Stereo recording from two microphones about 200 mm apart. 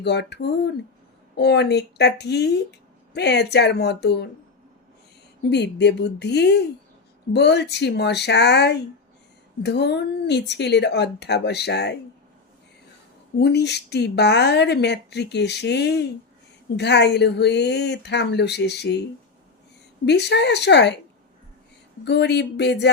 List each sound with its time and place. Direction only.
0.0 s speech: 60° left (ahead or behind)
5.5 s speech: 60° left (ahead or behind)
13.4 s speech: 55° left (ahead or behind)
20.1 s speech: 60° left (ahead or behind)
22.0 s speech: 60° left (ahead or behind)